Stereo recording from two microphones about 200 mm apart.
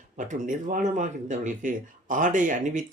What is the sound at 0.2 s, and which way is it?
Speech, 40° right (ahead or behind).